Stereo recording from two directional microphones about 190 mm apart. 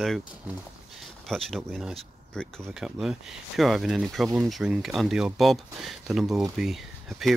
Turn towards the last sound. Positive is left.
turn(degrees=0)  # may be behind; listen again after turning